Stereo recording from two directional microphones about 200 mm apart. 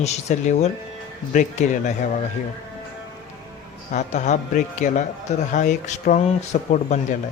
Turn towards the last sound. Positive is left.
turn(degrees=35)  # may be behind; listen again after turning